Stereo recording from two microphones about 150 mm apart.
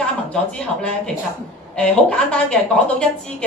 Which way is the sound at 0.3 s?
5° left (ahead or behind).